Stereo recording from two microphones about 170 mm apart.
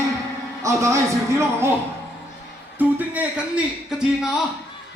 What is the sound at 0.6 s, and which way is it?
A man's voice, 20° right (ahead or behind).